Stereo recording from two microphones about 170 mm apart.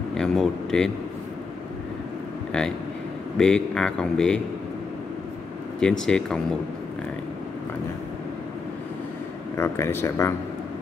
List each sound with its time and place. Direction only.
0.1 s speech: 5° left (ahead or behind)
3.3 s speech: 5° left (ahead or behind)
5.8 s speech: 5° left (ahead or behind)
9.6 s speech: 15° left (ahead or behind)